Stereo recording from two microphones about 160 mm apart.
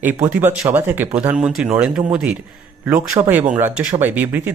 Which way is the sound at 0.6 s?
10° right (ahead or behind).